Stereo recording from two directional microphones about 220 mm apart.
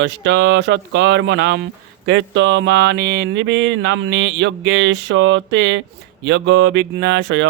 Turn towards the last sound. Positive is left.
turn(degrees=-55)  # may be behind; listen again after turning